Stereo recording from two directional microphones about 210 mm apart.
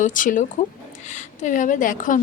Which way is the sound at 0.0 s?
40° left (ahead or behind).